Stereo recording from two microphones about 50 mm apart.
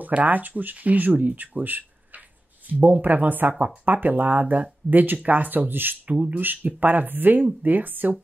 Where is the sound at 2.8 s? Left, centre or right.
Right.